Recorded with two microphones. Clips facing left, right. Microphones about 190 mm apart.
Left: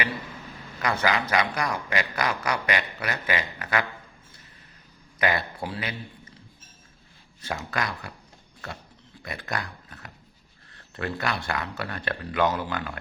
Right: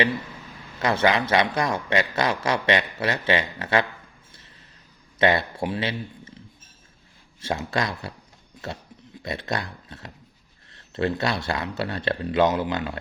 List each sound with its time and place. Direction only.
0.8 s a man's voice: 25° right (ahead or behind)
5.2 s a man's voice: 25° right (ahead or behind)
7.4 s a man's voice: 25° right (ahead or behind)
9.2 s a man's voice: 25° right (ahead or behind)